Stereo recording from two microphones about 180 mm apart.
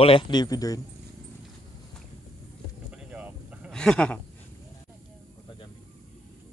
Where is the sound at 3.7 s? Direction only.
5° left (ahead or behind).